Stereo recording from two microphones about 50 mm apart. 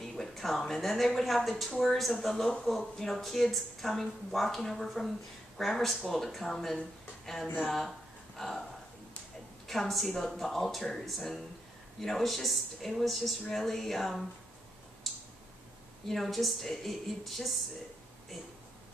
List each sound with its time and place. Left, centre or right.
0.0 s speech: centre
9.7 s speech: centre
15.0 s tick: centre
16.1 s speech: centre